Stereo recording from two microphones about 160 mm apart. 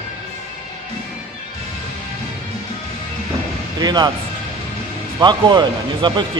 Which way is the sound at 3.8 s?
25° right (ahead or behind).